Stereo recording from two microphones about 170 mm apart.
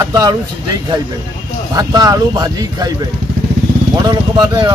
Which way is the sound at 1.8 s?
25° right (ahead or behind).